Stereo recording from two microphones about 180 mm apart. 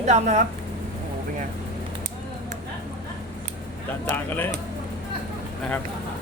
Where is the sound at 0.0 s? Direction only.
40° right (ahead or behind).